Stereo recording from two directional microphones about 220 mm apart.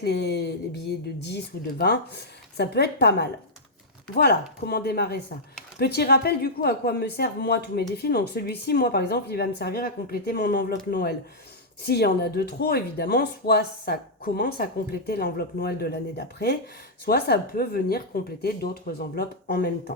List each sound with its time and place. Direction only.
0.0 s speech: 50° left (ahead or behind)